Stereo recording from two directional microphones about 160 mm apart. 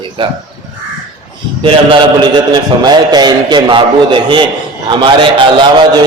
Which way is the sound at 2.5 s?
25° right (ahead or behind).